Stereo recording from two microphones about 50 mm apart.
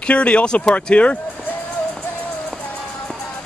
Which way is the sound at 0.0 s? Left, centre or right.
Left.